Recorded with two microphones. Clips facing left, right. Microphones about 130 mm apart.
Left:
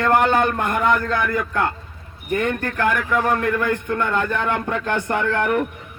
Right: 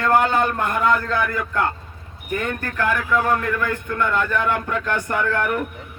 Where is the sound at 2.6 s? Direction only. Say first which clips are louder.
Left 2 dB; 15° left (ahead or behind).